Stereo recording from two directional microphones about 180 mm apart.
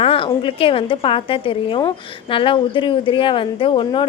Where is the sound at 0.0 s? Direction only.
30° left (ahead or behind).